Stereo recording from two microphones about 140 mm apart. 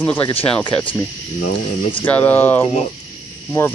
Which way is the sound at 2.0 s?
10° left (ahead or behind).